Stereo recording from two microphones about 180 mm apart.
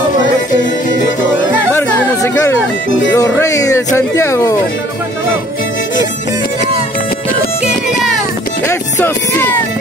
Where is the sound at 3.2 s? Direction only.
15° left (ahead or behind).